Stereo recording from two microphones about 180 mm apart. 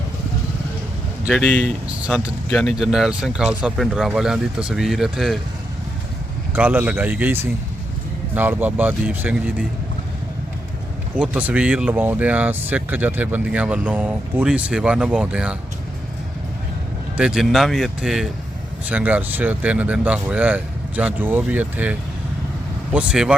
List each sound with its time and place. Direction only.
1.3 s speech: 5° left (ahead or behind)
6.5 s speech: 10° right (ahead or behind)
11.2 s speech: 10° right (ahead or behind)
17.2 s speech: 5° right (ahead or behind)